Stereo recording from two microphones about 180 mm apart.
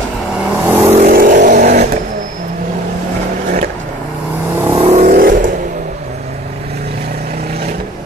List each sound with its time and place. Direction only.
0.4 s vehicle: 10° right (ahead or behind)
0.9 s vehicle: 50° right (ahead or behind)
4.7 s vehicle: 35° right (ahead or behind)
5.0 s vehicle: 50° right (ahead or behind)